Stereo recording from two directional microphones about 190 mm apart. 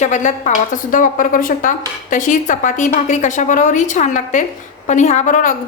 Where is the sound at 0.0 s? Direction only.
40° left (ahead or behind).